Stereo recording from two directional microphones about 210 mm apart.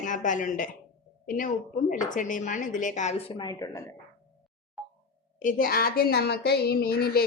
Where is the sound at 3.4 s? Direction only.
20° left (ahead or behind).